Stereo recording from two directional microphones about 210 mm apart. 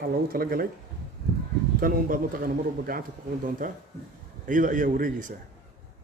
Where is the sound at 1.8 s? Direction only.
40° right (ahead or behind).